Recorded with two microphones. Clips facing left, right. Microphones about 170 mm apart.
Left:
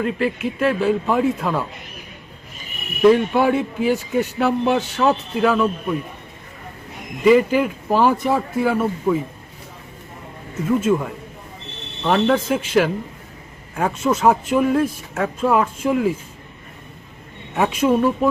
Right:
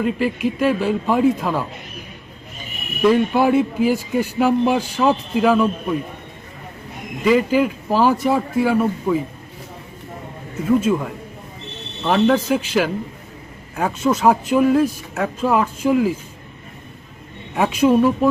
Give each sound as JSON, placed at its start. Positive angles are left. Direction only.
{"t": 0.0, "sound": "speech", "side_deg": -5}
{"t": 3.0, "sound": "speech", "side_deg": 0}
{"t": 7.3, "sound": "speech", "side_deg": 0}
{"t": 10.7, "sound": "speech", "side_deg": 5}
{"t": 17.6, "sound": "speech", "side_deg": -10}